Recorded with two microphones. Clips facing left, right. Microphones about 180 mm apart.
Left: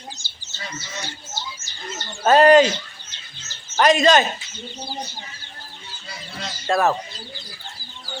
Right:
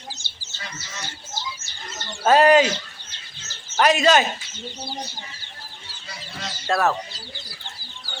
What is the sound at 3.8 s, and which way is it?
Speech, 10° right (ahead or behind).